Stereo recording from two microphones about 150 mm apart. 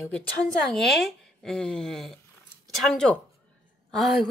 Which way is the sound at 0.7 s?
Centre (ahead or behind).